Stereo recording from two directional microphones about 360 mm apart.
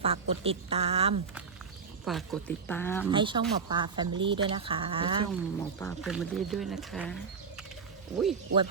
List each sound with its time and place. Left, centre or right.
0.0 s speech: centre
2.0 s speech: centre
3.1 s speech: centre
5.3 s speech: centre